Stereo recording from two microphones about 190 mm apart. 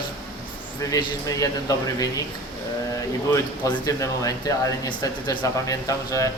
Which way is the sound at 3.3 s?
20° left (ahead or behind).